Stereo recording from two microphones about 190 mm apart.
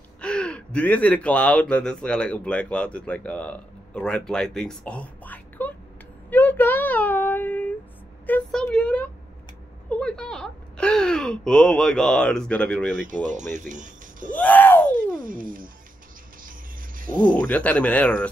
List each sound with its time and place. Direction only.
0.2 s speech: 5° left (ahead or behind)
6.3 s child singing: 10° left (ahead or behind)
8.3 s a sound: 5° left (ahead or behind)
9.8 s speech: 5° left (ahead or behind)
13.3 s speech: 40° right (ahead or behind)
14.3 s speech: 10° left (ahead or behind)
15.1 s speech: 45° right (ahead or behind)
16.4 s music: 45° right (ahead or behind)
17.2 s speech: 10° left (ahead or behind)